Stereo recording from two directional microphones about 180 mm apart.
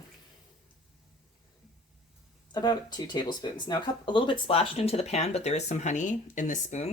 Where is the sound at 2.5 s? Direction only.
25° left (ahead or behind).